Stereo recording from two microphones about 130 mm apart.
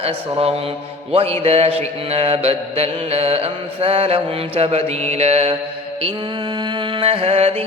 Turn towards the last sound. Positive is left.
turn(degrees=-50)  # may be behind; listen again after turning